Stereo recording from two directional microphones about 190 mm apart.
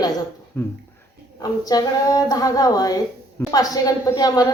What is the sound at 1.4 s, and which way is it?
Speech, 20° left (ahead or behind).